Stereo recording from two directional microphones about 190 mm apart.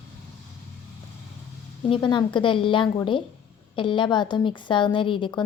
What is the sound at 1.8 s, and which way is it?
Speech, 25° left (ahead or behind).